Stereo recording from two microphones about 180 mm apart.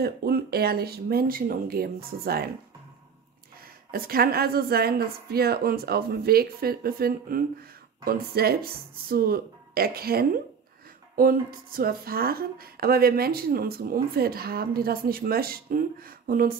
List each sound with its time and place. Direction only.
0.0 s a woman's voice: 60° right (ahead or behind)
3.5 s a woman's voice: 55° right (ahead or behind)